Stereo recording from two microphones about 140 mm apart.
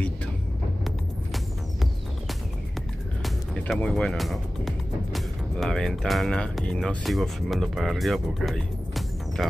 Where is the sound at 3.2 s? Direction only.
Centre (ahead or behind).